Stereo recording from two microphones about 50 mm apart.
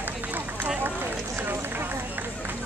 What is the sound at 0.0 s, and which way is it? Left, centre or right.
Run, right.